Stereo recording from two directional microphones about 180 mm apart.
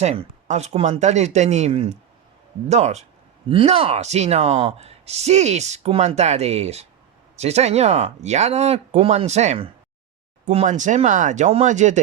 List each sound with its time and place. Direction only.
0.0 s speech: 40° right (ahead or behind)